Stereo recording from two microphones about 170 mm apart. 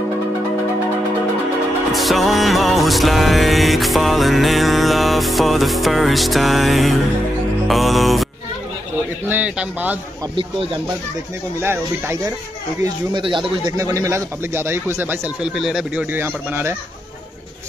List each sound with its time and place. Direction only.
1.9 s music: centre (ahead or behind)
9.3 s speech: 10° right (ahead or behind)
10.3 s speech: 30° right (ahead or behind)
11.6 s speech: 15° right (ahead or behind)
13.1 s speech: 30° right (ahead or behind); by 16.7 s 10° right (ahead or behind)